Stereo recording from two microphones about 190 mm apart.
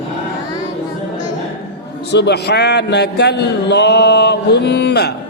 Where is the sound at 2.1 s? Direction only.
60° left (ahead or behind).